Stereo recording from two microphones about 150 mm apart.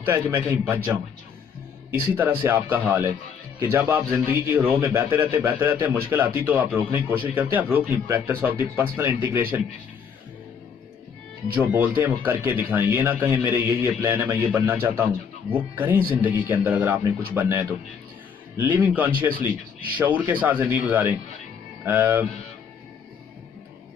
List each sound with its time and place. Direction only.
0.0 s a man's voice: 15° right (ahead or behind)
1.9 s a man's voice: 15° right (ahead or behind)
11.4 s a man's voice: 10° right (ahead or behind)